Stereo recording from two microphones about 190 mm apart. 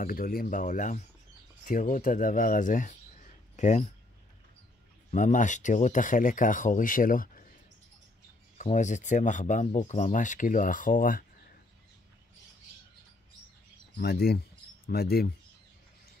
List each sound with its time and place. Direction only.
0.0 s speech: 50° left (ahead or behind)
5.1 s speech: 40° left (ahead or behind)
8.5 s speech: 40° left (ahead or behind)
13.9 s speech: 55° left (ahead or behind)